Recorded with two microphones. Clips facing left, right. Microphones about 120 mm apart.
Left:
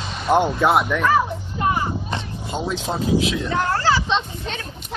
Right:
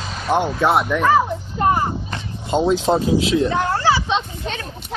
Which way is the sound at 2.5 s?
25° right (ahead or behind).